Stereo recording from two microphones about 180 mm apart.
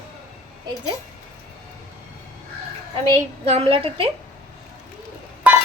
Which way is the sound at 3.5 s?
30° right (ahead or behind).